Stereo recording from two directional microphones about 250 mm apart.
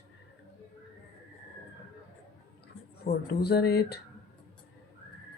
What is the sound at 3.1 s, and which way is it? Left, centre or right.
Speech, left.